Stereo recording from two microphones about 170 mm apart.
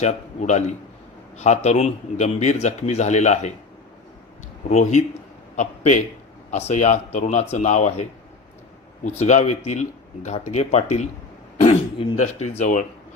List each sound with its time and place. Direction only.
0.0 s a man's voice: 40° left (ahead or behind)
4.6 s a man's voice: 45° left (ahead or behind)
12.2 s a man's voice: 40° left (ahead or behind)